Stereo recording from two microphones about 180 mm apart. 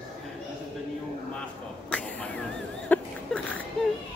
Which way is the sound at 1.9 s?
5° left (ahead or behind).